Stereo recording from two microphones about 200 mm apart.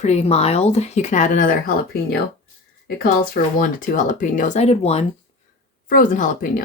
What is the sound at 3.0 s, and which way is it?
Speech, 45° left (ahead or behind).